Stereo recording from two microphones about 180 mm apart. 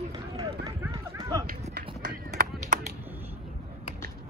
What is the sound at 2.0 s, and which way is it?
Run, 50° right (ahead or behind).